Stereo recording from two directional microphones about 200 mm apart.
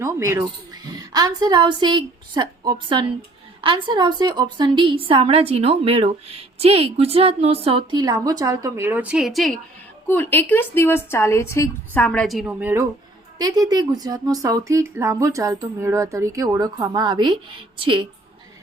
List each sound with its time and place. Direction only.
0.0 s a woman's voice: 15° right (ahead or behind)